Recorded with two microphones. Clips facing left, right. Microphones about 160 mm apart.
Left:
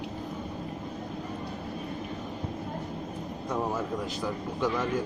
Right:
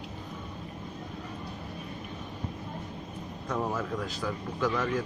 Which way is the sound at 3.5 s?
15° left (ahead or behind).